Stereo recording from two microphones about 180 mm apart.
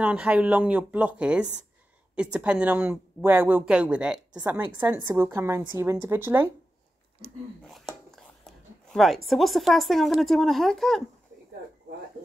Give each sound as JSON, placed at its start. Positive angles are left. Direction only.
{"t": 0.0, "sound": "speech", "side_deg": -5}
{"t": 7.6, "sound": "speech", "side_deg": 0}